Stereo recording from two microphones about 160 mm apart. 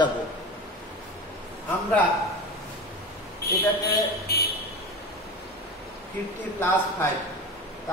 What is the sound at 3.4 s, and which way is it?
A man's voice, 75° left (ahead or behind).